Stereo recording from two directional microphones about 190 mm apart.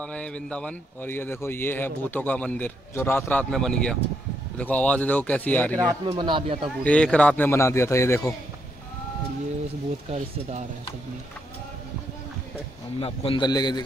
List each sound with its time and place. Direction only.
0.0 s speech: 5° left (ahead or behind)
6.0 s speech: 25° right (ahead or behind)
6.8 s speech: 5° left (ahead or behind)
10.1 s speech: 35° right (ahead or behind)
13.0 s a man's voice: 30° left (ahead or behind)